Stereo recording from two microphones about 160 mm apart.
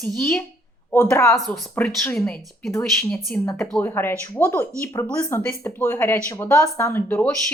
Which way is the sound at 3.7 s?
15° left (ahead or behind).